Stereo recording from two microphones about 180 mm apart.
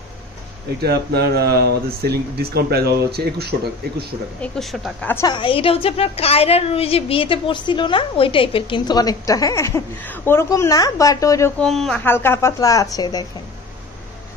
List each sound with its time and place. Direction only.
0.7 s speech: 65° right (ahead or behind)
4.4 s speech: centre (ahead or behind)
5.1 s a woman's voice: 25° left (ahead or behind)
11.6 s speech: centre (ahead or behind)
12.0 s a woman's voice: 10° left (ahead or behind)